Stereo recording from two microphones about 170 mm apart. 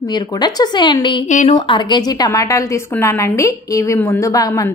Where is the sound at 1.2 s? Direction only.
45° left (ahead or behind).